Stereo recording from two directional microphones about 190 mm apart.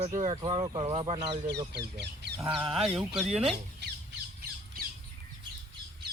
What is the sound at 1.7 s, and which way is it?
Speech, 60° right (ahead or behind).